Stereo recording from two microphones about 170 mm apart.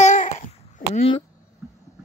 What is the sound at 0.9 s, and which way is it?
Speech, 35° left (ahead or behind).